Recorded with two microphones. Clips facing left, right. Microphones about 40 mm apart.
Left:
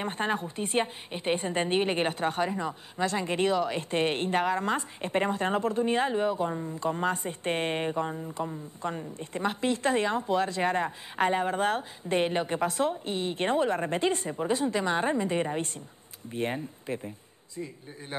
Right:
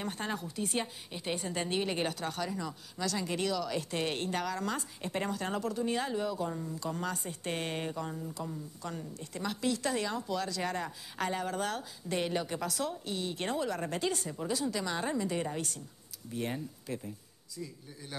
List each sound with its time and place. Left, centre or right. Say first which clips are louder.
0.0 s a woman's voice: left 7 dB; left